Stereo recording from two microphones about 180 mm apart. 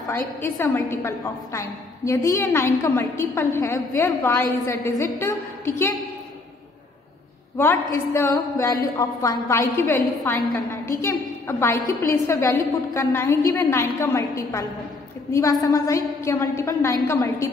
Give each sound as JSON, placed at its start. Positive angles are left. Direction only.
{"t": 0.1, "sound": "a woman's voice", "side_deg": 10}
{"t": 7.5, "sound": "a woman's voice", "side_deg": 10}